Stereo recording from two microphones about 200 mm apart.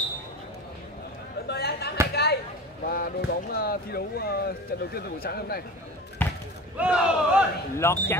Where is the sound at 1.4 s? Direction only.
55° left (ahead or behind).